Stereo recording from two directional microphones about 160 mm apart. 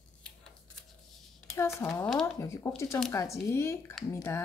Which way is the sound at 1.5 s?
15° left (ahead or behind).